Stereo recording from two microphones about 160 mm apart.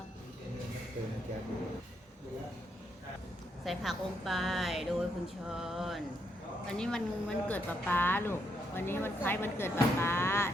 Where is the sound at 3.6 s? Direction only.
Centre (ahead or behind).